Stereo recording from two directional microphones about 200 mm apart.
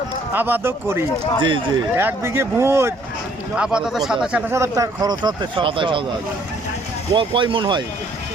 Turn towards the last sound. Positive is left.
turn(degrees=-25)  # may be behind; listen again after turning